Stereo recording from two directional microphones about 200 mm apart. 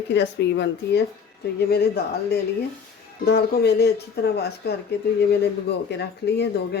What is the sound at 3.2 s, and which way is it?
Speech, 50° left (ahead or behind).